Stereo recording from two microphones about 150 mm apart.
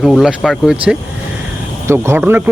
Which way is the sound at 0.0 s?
Centre (ahead or behind).